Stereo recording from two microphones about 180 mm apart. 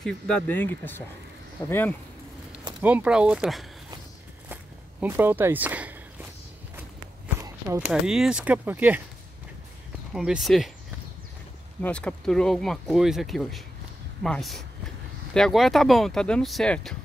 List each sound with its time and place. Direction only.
0.0 s speech: 10° left (ahead or behind)
2.8 s speech: 5° right (ahead or behind)
5.0 s speech: 10° right (ahead or behind)
7.3 s walk: 15° right (ahead or behind)
7.8 s speech: 5° right (ahead or behind)
10.1 s speech: 5° right (ahead or behind)
11.8 s speech: 5° left (ahead or behind)